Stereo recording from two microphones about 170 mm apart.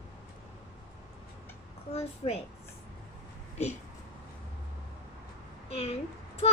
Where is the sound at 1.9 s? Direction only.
35° left (ahead or behind).